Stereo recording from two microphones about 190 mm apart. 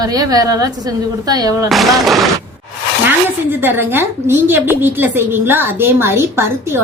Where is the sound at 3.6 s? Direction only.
10° right (ahead or behind).